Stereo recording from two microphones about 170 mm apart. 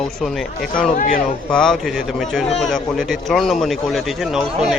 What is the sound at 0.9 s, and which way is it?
Speech, 50° left (ahead or behind).